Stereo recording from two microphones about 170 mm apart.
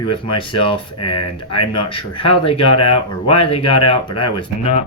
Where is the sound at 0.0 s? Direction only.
30° left (ahead or behind).